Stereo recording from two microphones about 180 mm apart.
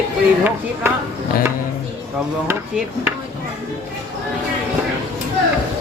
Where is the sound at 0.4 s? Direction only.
10° right (ahead or behind).